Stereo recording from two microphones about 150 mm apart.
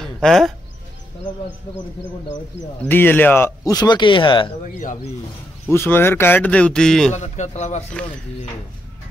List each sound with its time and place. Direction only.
0.0 s a sound: centre (ahead or behind)
2.8 s speech: 15° left (ahead or behind); by 4.6 s 35° left (ahead or behind)
5.7 s speech: 15° left (ahead or behind)
7.1 s a man's voice: 50° left (ahead or behind)